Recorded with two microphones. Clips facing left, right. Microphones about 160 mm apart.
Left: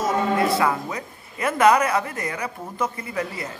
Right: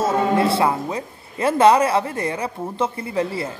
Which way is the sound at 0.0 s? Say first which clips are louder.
Right 3 dB; 30° right (ahead or behind).